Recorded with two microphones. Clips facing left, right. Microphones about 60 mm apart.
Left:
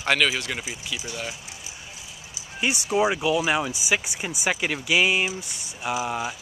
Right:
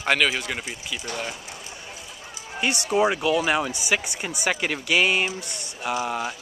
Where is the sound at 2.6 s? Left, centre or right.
Centre.